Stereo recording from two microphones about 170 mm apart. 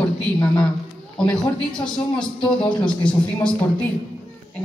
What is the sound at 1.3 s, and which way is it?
A man's voice, 5° left (ahead or behind).